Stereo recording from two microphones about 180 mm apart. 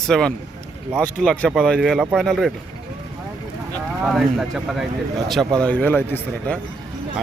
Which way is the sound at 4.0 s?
5° right (ahead or behind).